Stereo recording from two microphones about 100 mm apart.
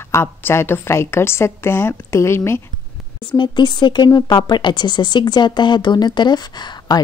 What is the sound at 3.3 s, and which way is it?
Speech, 50° left (ahead or behind).